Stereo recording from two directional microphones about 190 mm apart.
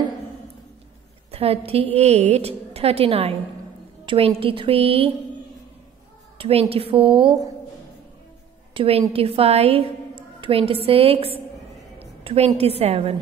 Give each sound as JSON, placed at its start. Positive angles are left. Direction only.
{"t": 1.3, "sound": "a woman's voice", "side_deg": -30}
{"t": 6.3, "sound": "a woman's voice", "side_deg": -30}
{"t": 8.7, "sound": "a woman's voice", "side_deg": -30}